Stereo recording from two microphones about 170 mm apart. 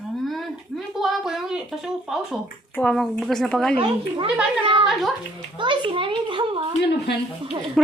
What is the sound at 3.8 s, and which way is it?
Speech, 30° right (ahead or behind).